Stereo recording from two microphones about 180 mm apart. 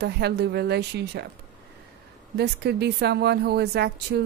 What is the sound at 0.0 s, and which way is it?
Speech, 65° right (ahead or behind).